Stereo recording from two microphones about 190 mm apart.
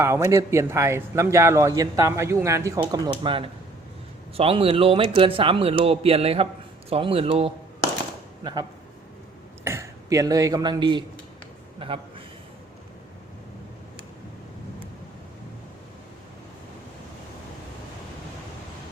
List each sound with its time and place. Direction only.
0.0 s a man's voice: 15° right (ahead or behind)
9.6 s speech: 15° right (ahead or behind)
11.8 s a sound: 30° right (ahead or behind)